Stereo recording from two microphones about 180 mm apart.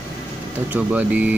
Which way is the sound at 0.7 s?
5° right (ahead or behind).